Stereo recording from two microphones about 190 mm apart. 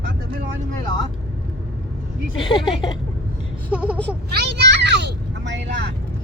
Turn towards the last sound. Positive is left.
turn(degrees=-70)  # may be behind; listen again after turning